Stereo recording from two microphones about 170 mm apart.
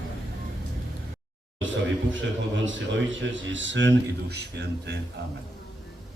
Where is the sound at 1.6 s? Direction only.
90° right.